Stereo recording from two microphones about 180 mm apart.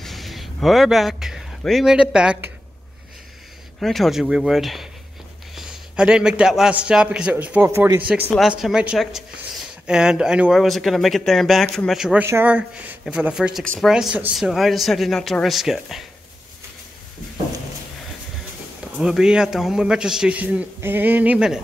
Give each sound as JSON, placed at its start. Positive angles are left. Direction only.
{"t": 0.0, "sound": "speech", "side_deg": 0}
{"t": 3.8, "sound": "a man's voice", "side_deg": 0}
{"t": 18.9, "sound": "a man's voice", "side_deg": -5}